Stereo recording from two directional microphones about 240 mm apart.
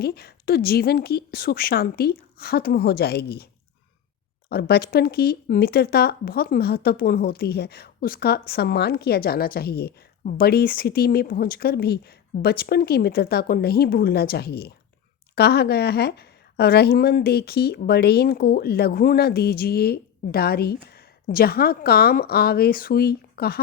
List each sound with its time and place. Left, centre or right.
0.0 s speech: left
4.4 s speech: left